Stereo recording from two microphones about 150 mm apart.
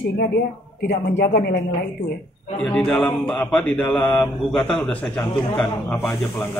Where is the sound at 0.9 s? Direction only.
90° left.